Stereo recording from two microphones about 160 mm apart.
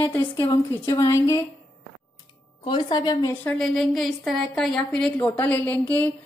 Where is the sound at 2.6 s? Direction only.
30° left (ahead or behind).